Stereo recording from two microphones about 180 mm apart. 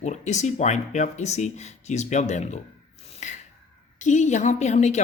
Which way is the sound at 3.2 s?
40° left (ahead or behind).